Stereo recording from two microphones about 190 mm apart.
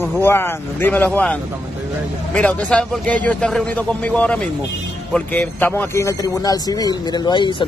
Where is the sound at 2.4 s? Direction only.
5° left (ahead or behind); by 7.6 s 25° left (ahead or behind).